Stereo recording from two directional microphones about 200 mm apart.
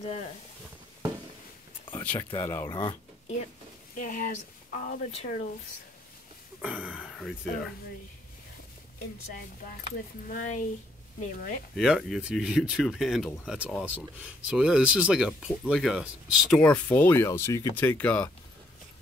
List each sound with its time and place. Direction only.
0.0 s speech: 30° left (ahead or behind)
2.0 s speech: 15° left (ahead or behind)
3.9 s speech: 45° left (ahead or behind)
6.6 s speech: 5° right (ahead or behind)
10.2 s speech: 40° left (ahead or behind)
11.7 s speech: centre (ahead or behind)